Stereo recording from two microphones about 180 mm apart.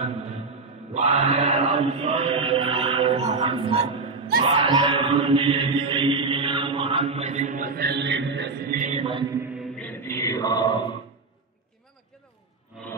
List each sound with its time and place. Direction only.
0.9 s chant: 35° right (ahead or behind)
2.0 s music: 35° right (ahead or behind)
9.2 s mantra: 15° right (ahead or behind)
9.6 s mantra: centre (ahead or behind); by 11.0 s 25° left (ahead or behind)